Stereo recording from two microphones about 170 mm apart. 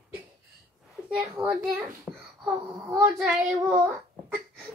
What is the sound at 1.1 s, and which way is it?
Speech, 5° right (ahead or behind).